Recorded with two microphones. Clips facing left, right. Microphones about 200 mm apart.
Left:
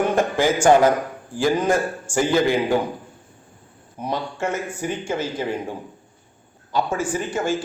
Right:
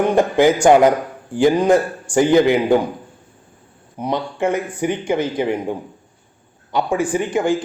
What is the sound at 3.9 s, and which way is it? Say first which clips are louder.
Speech: right 5 dB; 15° right (ahead or behind).